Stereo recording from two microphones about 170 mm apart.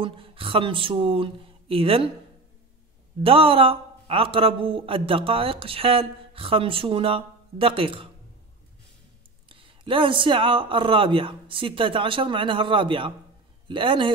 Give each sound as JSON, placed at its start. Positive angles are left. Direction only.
{"t": 0.0, "sound": "speech", "side_deg": -30}
{"t": 3.2, "sound": "a man's voice", "side_deg": -30}
{"t": 9.5, "sound": "speech", "side_deg": -30}